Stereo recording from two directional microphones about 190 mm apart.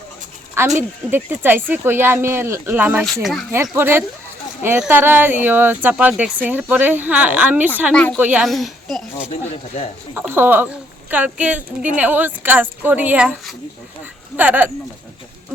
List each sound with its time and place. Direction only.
0.8 s speech: 10° right (ahead or behind)
3.5 s speech: 15° right (ahead or behind)
7.9 s speech: 5° left (ahead or behind)
8.2 s speech: 5° right (ahead or behind)
9.3 s speech: 35° left (ahead or behind)
10.2 s speech: 10° right (ahead or behind)